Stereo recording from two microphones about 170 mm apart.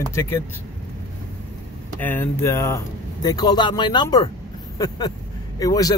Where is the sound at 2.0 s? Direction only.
10° left (ahead or behind).